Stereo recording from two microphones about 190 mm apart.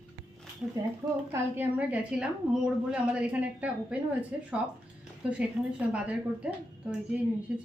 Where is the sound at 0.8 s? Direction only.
15° right (ahead or behind).